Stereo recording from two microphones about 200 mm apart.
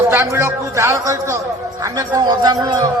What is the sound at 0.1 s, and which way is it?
A man's voice, 15° right (ahead or behind).